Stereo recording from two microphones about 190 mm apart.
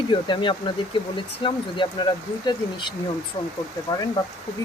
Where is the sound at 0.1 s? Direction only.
25° left (ahead or behind).